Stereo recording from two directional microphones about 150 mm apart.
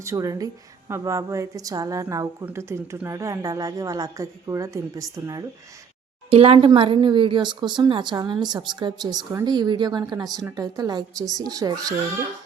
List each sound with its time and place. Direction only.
0.0 s a woman's voice: 20° right (ahead or behind)
6.3 s a woman's voice: 40° right (ahead or behind); by 11.9 s 25° right (ahead or behind)